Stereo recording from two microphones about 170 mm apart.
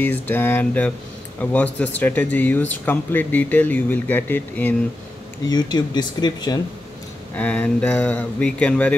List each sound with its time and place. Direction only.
0.0 s speech: 10° left (ahead or behind)
5.5 s speech: 25° left (ahead or behind)
7.3 s speech: 10° left (ahead or behind)